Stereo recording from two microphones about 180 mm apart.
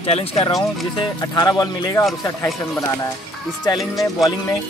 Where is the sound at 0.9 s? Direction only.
20° left (ahead or behind).